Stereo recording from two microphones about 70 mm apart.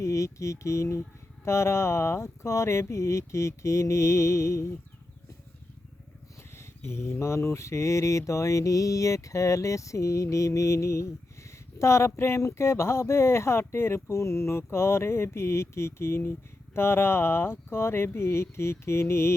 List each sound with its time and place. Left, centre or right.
0.0 s speech: left
1.5 s mantra: left
6.6 s mantra: left
11.8 s speech: left